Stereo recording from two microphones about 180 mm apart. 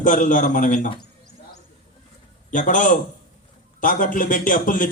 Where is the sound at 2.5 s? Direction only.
45° left (ahead or behind).